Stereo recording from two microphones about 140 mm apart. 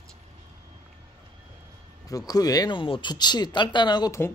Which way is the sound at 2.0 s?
25° left (ahead or behind).